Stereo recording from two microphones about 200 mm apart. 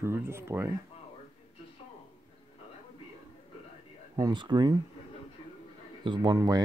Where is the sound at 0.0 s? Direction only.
15° right (ahead or behind).